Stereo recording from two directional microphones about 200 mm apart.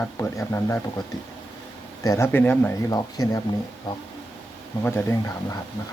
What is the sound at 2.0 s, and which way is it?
Speech, 15° left (ahead or behind).